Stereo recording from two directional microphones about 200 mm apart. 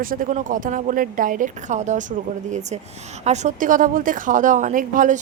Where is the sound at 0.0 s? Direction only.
45° right (ahead or behind).